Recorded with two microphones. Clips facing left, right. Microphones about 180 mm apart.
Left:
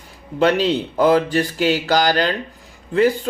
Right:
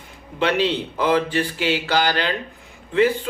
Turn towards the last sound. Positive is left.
turn(degrees=40)  # may be behind; listen again after turning